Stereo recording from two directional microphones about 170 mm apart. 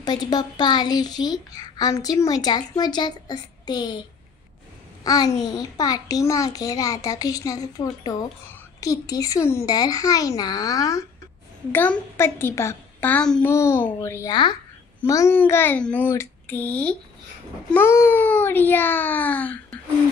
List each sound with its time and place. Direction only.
0.0 s a woman's voice: 25° left (ahead or behind)
5.0 s a woman's voice: 20° left (ahead or behind)
14.3 s a woman's voice: 25° left (ahead or behind); by 19.6 s 10° left (ahead or behind)